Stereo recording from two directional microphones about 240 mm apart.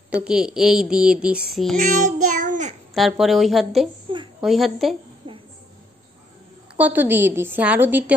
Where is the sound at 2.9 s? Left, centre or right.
Centre.